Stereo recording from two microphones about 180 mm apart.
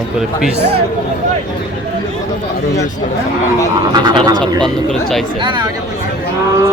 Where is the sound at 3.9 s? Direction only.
25° right (ahead or behind).